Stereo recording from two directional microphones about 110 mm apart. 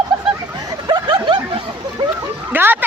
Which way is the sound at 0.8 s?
45° right (ahead or behind).